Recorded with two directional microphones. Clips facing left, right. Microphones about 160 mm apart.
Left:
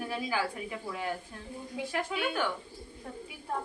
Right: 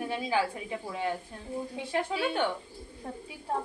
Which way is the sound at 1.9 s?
30° right (ahead or behind).